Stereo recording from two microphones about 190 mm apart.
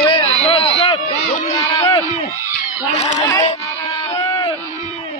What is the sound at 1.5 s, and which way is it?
A man's voice, 20° left (ahead or behind).